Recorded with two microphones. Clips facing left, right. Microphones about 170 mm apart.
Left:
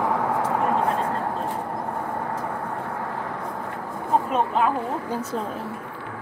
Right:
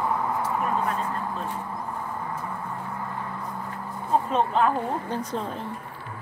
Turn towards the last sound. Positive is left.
turn(degrees=90)